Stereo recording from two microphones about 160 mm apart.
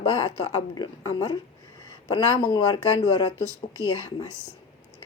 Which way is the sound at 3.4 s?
20° right (ahead or behind).